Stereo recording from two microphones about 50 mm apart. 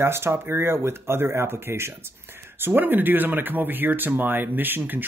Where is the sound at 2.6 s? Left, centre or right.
Right.